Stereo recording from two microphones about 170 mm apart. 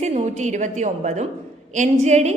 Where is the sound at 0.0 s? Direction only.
45° right (ahead or behind).